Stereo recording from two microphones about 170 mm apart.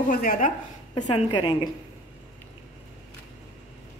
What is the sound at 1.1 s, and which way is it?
Speech, 30° left (ahead or behind).